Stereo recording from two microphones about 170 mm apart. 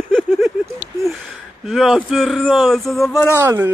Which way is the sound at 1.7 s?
Centre (ahead or behind).